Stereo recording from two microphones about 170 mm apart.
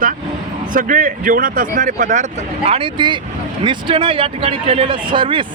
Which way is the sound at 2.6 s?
35° right (ahead or behind).